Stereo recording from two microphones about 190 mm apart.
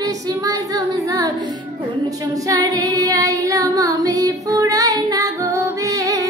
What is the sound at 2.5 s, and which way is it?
Female singing, 20° right (ahead or behind).